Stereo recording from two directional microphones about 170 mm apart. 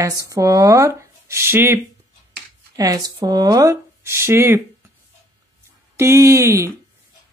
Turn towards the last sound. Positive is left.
turn(degrees=-15)  # may be behind; listen again after turning